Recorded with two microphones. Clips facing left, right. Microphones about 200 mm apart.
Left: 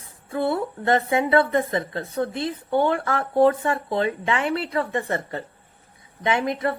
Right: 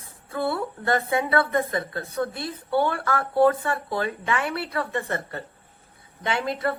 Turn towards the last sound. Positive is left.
turn(degrees=15)  # may be behind; listen again after turning